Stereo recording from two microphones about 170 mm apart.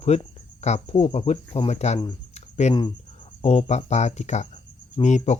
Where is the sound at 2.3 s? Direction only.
40° left (ahead or behind).